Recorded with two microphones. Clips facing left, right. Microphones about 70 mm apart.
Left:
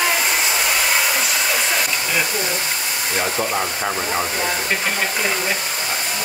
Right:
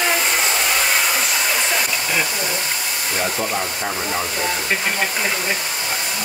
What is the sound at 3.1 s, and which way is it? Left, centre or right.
Speech, left.